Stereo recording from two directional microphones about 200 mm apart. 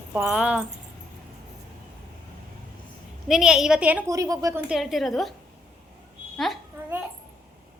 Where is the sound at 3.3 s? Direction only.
5° right (ahead or behind).